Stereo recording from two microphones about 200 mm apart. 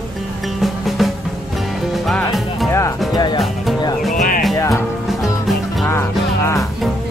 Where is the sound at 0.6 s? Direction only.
Centre (ahead or behind).